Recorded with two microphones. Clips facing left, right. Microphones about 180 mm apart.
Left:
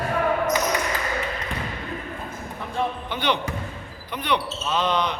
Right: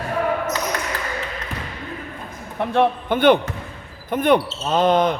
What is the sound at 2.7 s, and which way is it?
Speech, 60° right (ahead or behind).